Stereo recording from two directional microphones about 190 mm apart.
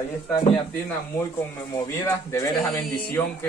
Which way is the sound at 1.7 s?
15° left (ahead or behind).